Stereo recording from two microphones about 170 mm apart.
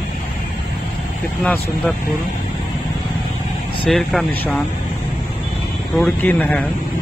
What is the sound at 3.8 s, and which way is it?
Speech, centre (ahead or behind).